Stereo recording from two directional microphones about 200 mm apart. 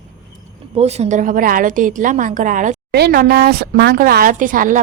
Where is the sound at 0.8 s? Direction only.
35° right (ahead or behind).